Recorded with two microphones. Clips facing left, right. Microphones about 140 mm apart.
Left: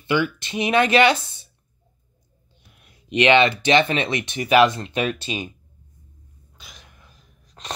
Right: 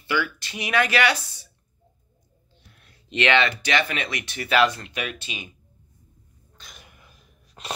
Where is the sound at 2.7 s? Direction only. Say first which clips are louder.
Left 7 dB; 15° left (ahead or behind); by 5.5 s 35° left (ahead or behind).